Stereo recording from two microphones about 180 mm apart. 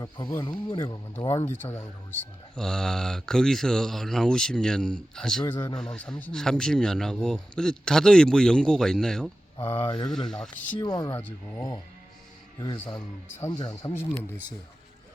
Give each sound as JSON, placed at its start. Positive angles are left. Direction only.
{"t": 0.0, "sound": "speech", "side_deg": 20}
{"t": 10.8, "sound": "speech", "side_deg": 20}
{"t": 11.2, "sound": "speech", "side_deg": 10}